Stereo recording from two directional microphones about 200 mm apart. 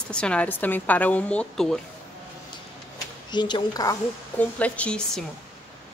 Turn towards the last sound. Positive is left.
turn(degrees=5)  # may be behind; listen again after turning